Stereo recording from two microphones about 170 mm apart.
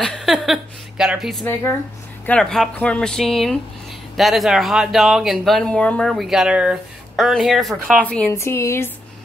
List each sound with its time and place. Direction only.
0.0 s a sound: centre (ahead or behind)
2.2 s speech: 5° left (ahead or behind)
8.3 s a woman's voice: 15° left (ahead or behind)